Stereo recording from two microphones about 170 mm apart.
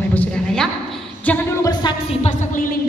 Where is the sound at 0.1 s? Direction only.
10° left (ahead or behind).